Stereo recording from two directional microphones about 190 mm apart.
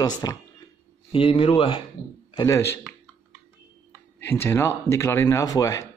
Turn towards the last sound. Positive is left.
turn(degrees=20)  # may be behind; listen again after turning